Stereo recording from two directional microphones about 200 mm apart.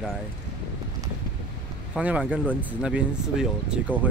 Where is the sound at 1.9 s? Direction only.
5° right (ahead or behind).